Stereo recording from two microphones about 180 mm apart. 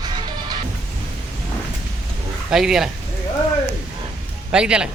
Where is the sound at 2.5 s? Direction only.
Centre (ahead or behind).